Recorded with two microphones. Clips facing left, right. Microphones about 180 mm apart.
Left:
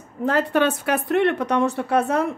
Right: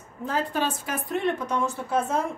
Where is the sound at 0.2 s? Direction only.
70° left (ahead or behind).